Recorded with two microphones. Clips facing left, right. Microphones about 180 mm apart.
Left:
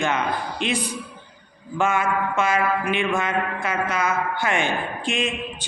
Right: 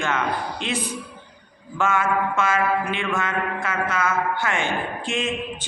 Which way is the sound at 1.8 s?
15° left (ahead or behind).